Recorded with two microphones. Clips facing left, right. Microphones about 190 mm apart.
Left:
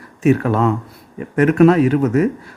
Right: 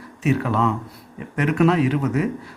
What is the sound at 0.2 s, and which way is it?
Speech, 50° left (ahead or behind).